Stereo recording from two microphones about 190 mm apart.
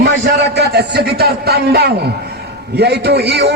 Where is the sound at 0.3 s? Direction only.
60° right (ahead or behind).